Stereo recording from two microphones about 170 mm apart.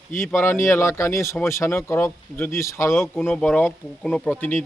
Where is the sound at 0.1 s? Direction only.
15° left (ahead or behind).